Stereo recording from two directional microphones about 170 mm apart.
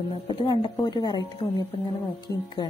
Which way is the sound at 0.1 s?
30° left (ahead or behind).